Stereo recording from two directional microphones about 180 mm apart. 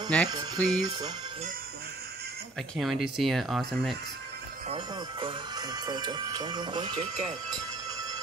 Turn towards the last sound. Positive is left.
turn(degrees=-25)  # may be behind; listen again after turning